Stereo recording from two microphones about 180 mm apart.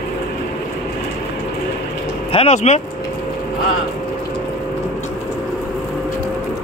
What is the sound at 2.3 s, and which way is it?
Speech, 35° left (ahead or behind).